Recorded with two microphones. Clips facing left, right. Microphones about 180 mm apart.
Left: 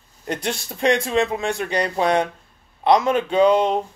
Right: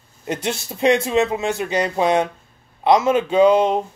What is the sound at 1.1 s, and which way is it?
Speech, 20° right (ahead or behind).